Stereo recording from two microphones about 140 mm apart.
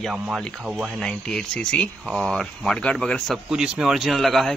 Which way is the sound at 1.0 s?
5° left (ahead or behind).